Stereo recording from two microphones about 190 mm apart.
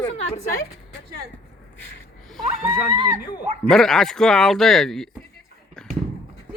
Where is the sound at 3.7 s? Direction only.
5° left (ahead or behind).